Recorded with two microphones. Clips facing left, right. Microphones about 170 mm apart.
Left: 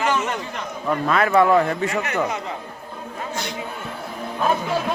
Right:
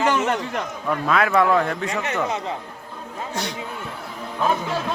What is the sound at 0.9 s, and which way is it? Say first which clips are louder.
A man's voice: left 1 dB; centre (ahead or behind).